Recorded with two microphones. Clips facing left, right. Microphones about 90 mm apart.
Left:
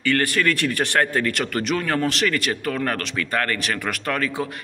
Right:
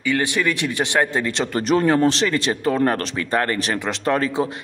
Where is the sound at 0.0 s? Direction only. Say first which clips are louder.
Even; 15° right (ahead or behind).